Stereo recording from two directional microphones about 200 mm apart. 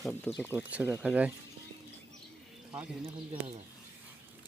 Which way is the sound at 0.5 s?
5° right (ahead or behind).